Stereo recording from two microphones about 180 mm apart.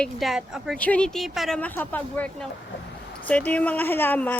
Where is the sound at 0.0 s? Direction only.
Centre (ahead or behind).